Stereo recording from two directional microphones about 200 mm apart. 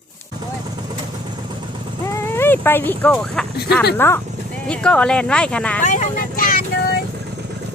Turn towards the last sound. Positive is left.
turn(degrees=45)  # may be behind; listen again after turning